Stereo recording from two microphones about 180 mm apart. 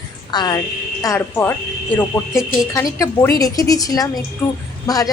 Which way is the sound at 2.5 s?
15° left (ahead or behind).